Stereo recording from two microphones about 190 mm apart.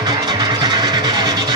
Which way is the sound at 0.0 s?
20° right (ahead or behind).